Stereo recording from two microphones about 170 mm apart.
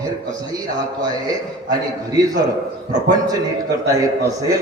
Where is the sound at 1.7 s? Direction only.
20° right (ahead or behind).